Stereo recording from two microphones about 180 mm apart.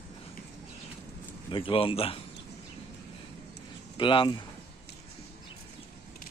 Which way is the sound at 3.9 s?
25° left (ahead or behind).